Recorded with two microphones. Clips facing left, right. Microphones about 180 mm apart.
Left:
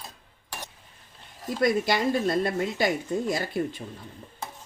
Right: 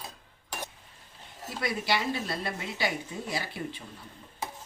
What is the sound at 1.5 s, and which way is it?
Speech, 45° left (ahead or behind).